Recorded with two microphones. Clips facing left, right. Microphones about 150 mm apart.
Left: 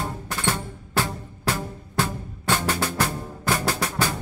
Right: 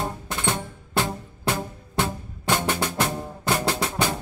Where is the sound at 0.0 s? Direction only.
20° right (ahead or behind).